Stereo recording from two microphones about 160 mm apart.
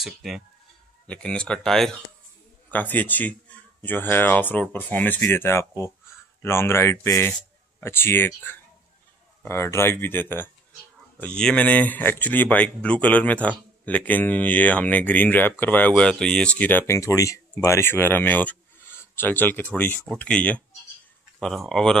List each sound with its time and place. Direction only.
0.0 s speech: centre (ahead or behind)